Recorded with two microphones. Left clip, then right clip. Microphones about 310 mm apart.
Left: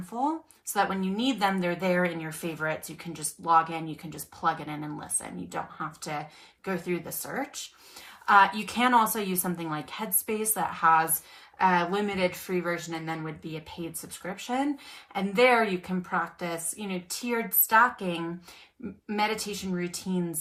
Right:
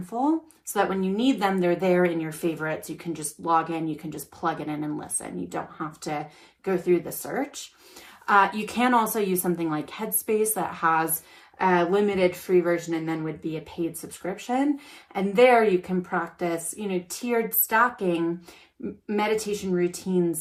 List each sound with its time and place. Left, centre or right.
0.1 s speech: centre
0.7 s a woman's voice: centre